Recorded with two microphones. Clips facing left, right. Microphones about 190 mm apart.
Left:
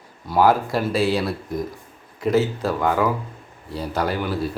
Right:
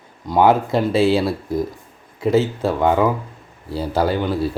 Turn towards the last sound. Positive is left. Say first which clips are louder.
# right 4 dB
turn(degrees=-25)  # may be behind; listen again after turning